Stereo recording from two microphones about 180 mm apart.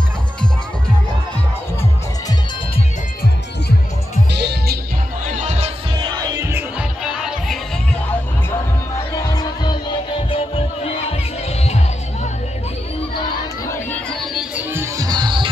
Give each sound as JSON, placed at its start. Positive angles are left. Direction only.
{"t": 4.3, "sound": "music", "side_deg": -65}
{"t": 5.4, "sound": "music", "side_deg": -35}
{"t": 9.1, "sound": "music", "side_deg": 20}
{"t": 13.7, "sound": "music", "side_deg": 10}
{"t": 14.3, "sound": "music", "side_deg": -5}